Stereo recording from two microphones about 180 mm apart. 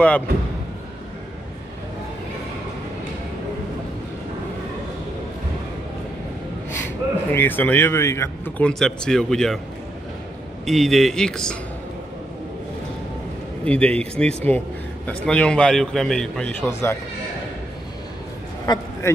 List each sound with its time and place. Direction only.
6.8 s speech: 10° left (ahead or behind)
10.6 s a man's voice: centre (ahead or behind)
13.7 s a man's voice: 5° left (ahead or behind)
18.7 s a man's voice: 25° left (ahead or behind)